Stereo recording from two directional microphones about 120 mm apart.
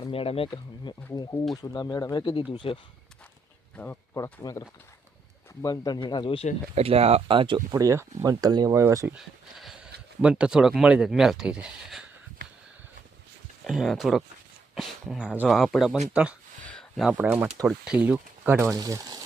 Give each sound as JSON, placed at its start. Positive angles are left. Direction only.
{"t": 0.0, "sound": "speech", "side_deg": 50}
{"t": 1.1, "sound": "speech", "side_deg": 30}
{"t": 2.5, "sound": "speech", "side_deg": 45}
{"t": 3.8, "sound": "speech", "side_deg": 15}
{"t": 4.1, "sound": "speech", "side_deg": 30}
{"t": 6.7, "sound": "speech", "side_deg": -60}
{"t": 7.7, "sound": "speech", "side_deg": -25}
{"t": 9.1, "sound": "speech", "side_deg": -5}
{"t": 13.7, "sound": "speech", "side_deg": 0}
{"t": 15.4, "sound": "speech", "side_deg": 0}
{"t": 16.6, "sound": "a sound", "side_deg": 5}
{"t": 17.0, "sound": "speech", "side_deg": -10}
{"t": 18.8, "sound": "speech", "side_deg": -30}